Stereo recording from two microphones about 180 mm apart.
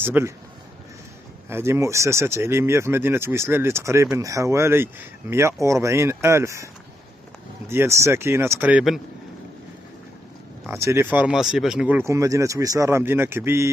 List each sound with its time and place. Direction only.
0.0 s a man's voice: 10° right (ahead or behind)
1.5 s speech: 15° right (ahead or behind)
10.7 s speech: 15° right (ahead or behind)